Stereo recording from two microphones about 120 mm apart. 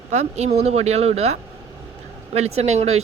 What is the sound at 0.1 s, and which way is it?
Speech, 70° right (ahead or behind).